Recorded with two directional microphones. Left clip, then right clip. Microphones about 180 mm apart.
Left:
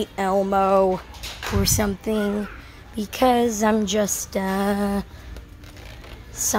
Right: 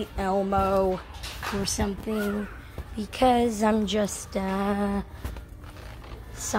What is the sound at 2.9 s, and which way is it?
A woman's voice, 10° left (ahead or behind).